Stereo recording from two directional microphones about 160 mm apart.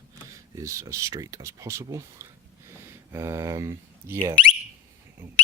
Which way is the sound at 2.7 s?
15° right (ahead or behind).